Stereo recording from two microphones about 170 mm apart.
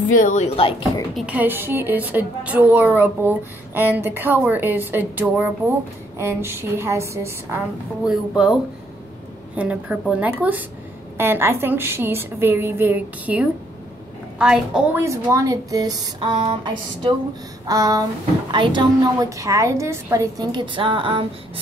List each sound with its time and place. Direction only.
0.2 s speech: 45° left (ahead or behind)
1.1 s a woman's voice: 5° right (ahead or behind)
8.1 s a woman's voice: 5° right (ahead or behind)
9.6 s a woman's voice: 5° right (ahead or behind)
15.0 s a woman's voice: 20° right (ahead or behind)